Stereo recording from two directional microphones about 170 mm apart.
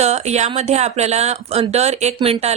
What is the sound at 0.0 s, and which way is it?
Speech, 40° right (ahead or behind).